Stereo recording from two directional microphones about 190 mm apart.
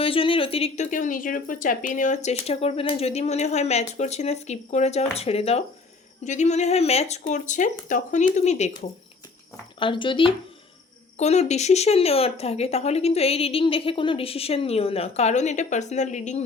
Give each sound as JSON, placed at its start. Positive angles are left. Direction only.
{"t": 0.0, "sound": "speech", "side_deg": 30}
{"t": 9.8, "sound": "speech", "side_deg": 25}